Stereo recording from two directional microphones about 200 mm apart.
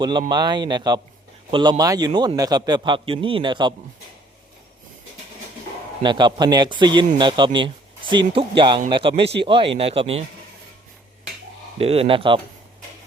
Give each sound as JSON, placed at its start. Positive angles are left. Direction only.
{"t": 0.0, "sound": "a man's voice", "side_deg": -25}
{"t": 6.0, "sound": "a man's voice", "side_deg": -20}
{"t": 11.8, "sound": "a man's voice", "side_deg": -30}